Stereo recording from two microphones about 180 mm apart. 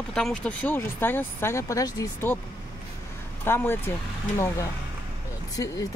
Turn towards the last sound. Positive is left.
turn(degrees=20)  # may be behind; listen again after turning